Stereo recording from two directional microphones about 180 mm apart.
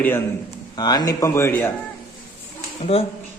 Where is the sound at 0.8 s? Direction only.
20° left (ahead or behind).